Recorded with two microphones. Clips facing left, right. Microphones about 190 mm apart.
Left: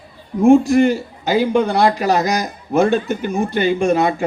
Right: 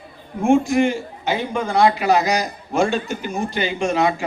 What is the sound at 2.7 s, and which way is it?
Speech, 55° left (ahead or behind).